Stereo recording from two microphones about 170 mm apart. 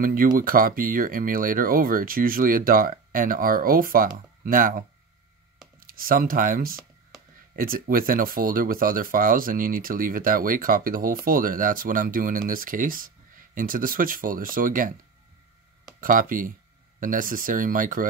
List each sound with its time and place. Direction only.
0.0 s speech: 55° right (ahead or behind)
16.0 s speech: 55° right (ahead or behind)